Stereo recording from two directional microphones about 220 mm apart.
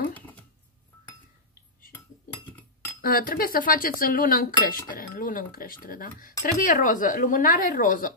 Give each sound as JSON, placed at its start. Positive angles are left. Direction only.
{"t": 3.0, "sound": "speech", "side_deg": 40}